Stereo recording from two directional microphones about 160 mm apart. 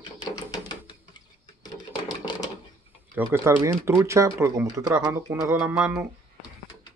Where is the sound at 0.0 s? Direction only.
25° left (ahead or behind).